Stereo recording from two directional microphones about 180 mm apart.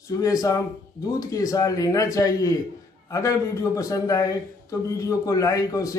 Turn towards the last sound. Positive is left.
turn(degrees=20)  # may be behind; listen again after turning